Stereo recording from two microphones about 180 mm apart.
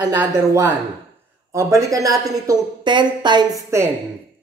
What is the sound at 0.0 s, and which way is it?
A woman's voice, 20° right (ahead or behind).